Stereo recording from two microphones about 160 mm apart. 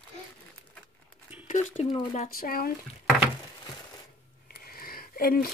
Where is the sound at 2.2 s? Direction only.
65° left (ahead or behind).